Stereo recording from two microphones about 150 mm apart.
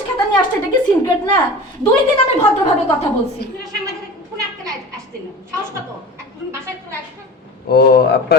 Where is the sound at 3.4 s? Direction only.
90° left.